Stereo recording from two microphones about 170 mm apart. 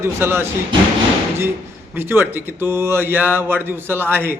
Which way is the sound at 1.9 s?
10° right (ahead or behind).